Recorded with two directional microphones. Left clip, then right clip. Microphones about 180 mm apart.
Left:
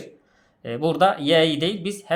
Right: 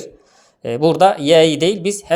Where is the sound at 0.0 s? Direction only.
40° right (ahead or behind).